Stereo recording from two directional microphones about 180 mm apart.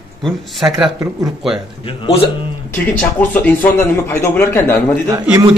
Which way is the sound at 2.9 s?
10° left (ahead or behind).